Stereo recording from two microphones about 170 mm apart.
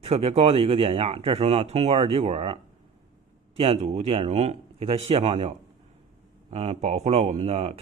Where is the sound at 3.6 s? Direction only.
35° right (ahead or behind).